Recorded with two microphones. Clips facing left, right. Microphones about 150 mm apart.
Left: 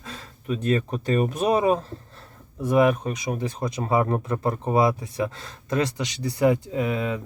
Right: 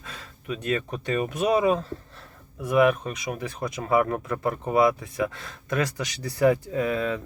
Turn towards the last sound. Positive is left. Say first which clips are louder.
# even
turn(degrees=20)  # may be behind; listen again after turning